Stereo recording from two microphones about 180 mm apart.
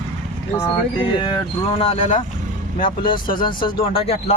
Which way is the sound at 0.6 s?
25° left (ahead or behind).